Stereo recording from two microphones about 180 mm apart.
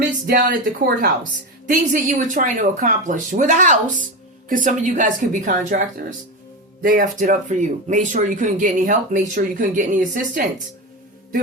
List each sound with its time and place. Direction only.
0.0 s speech: 50° right (ahead or behind)